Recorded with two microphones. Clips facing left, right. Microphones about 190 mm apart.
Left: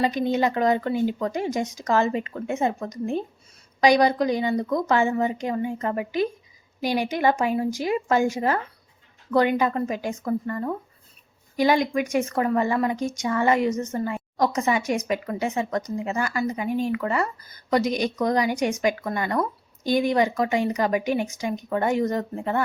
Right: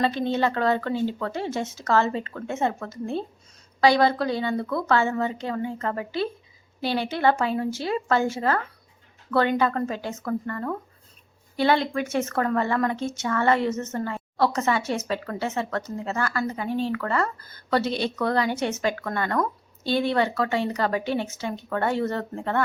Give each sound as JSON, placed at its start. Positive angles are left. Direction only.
{"t": 0.0, "sound": "speech", "side_deg": 15}